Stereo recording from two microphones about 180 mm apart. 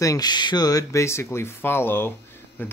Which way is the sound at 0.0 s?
20° left (ahead or behind).